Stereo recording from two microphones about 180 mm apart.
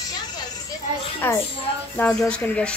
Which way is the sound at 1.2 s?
10° left (ahead or behind).